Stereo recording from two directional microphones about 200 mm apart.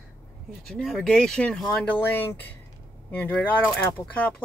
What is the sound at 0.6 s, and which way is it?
Speech, centre (ahead or behind).